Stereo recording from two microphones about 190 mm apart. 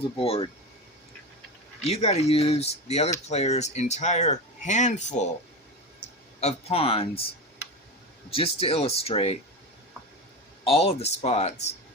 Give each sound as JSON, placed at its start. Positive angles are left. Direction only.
{"t": 0.2, "sound": "speech", "side_deg": 30}
{"t": 1.8, "sound": "speech", "side_deg": 35}
{"t": 6.4, "sound": "speech", "side_deg": 30}
{"t": 8.3, "sound": "speech", "side_deg": 30}
{"t": 10.6, "sound": "speech", "side_deg": 30}